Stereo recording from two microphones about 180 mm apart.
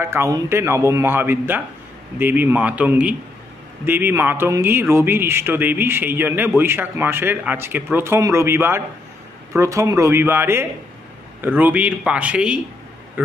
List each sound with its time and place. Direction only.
0.0 s a man's voice: 15° right (ahead or behind)